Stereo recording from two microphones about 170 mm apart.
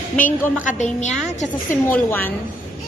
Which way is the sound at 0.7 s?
45° left (ahead or behind).